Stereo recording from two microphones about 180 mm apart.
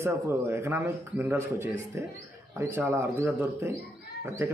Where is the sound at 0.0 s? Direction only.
15° right (ahead or behind).